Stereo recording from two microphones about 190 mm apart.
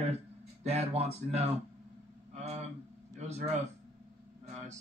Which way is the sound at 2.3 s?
35° right (ahead or behind).